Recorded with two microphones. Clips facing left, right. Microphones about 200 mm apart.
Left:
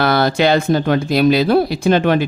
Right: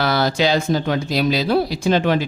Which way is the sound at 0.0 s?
55° left (ahead or behind).